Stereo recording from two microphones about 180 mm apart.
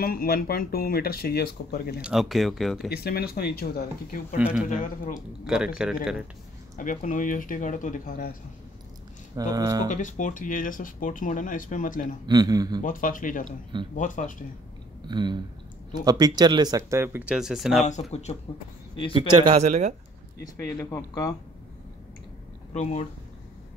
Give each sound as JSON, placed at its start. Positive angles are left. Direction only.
{"t": 0.0, "sound": "speech", "side_deg": 55}
{"t": 2.0, "sound": "speech", "side_deg": -5}
{"t": 2.9, "sound": "speech", "side_deg": 60}
{"t": 5.5, "sound": "speech", "side_deg": -5}
{"t": 6.8, "sound": "speech", "side_deg": 45}
{"t": 9.3, "sound": "speech", "side_deg": -20}
{"t": 9.8, "sound": "speech", "side_deg": 45}
{"t": 12.3, "sound": "speech", "side_deg": -20}
{"t": 12.8, "sound": "speech", "side_deg": 45}
{"t": 15.0, "sound": "speech", "side_deg": -25}
{"t": 18.1, "sound": "a man's voice", "side_deg": 35}
{"t": 19.1, "sound": "speech", "side_deg": -35}
{"t": 20.4, "sound": "speech", "side_deg": 15}
{"t": 22.7, "sound": "speech", "side_deg": 40}